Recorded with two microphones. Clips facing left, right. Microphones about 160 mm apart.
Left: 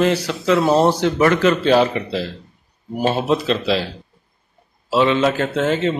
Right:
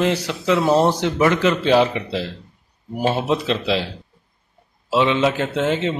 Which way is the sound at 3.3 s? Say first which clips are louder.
Left 2 dB; 20° right (ahead or behind).